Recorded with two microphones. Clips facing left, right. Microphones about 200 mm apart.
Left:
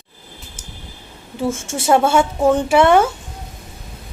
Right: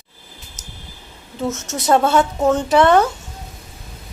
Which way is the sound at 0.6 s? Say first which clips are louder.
Right 1 dB; 30° left (ahead or behind).